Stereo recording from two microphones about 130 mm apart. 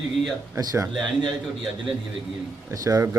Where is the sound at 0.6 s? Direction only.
30° right (ahead or behind).